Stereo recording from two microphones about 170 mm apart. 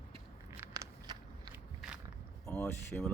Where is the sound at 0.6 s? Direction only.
20° right (ahead or behind).